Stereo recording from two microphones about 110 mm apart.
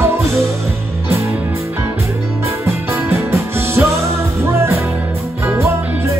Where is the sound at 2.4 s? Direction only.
25° right (ahead or behind).